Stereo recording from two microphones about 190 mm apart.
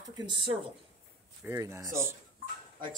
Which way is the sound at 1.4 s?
15° right (ahead or behind).